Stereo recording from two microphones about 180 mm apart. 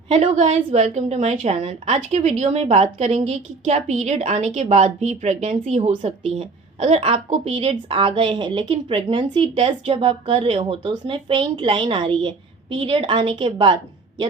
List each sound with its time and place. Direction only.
0.1 s a woman's voice: 40° right (ahead or behind)